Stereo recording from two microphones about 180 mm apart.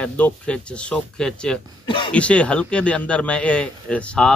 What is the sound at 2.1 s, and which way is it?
Speech, 5° left (ahead or behind).